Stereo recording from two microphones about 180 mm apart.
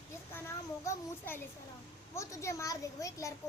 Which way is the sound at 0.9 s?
10° left (ahead or behind).